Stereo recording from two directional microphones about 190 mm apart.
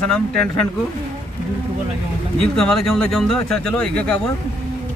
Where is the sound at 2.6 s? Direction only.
Centre (ahead or behind).